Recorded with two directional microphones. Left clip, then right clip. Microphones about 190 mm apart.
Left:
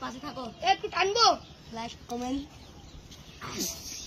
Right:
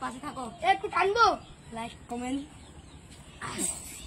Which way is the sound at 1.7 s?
30° left (ahead or behind).